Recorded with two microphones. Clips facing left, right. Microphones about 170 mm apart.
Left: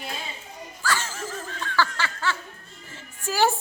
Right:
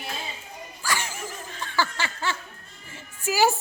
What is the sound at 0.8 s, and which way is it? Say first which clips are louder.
Snicker: left 2 dB; 15° right (ahead or behind).